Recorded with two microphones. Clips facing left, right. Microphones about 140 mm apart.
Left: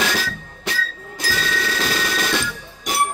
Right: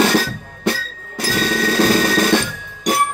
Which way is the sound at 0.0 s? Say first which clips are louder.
Right 8 dB; 45° right (ahead or behind).